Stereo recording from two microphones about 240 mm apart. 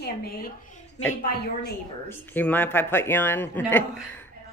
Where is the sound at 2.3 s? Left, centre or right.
Centre.